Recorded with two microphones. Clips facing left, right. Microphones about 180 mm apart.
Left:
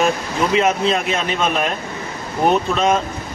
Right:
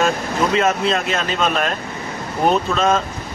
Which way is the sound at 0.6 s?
15° left (ahead or behind).